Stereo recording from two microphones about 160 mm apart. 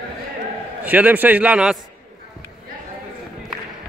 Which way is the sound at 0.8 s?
10° right (ahead or behind).